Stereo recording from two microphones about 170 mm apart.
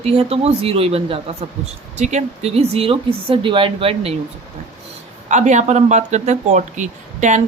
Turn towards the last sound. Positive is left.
turn(degrees=-45)  # may be behind; listen again after turning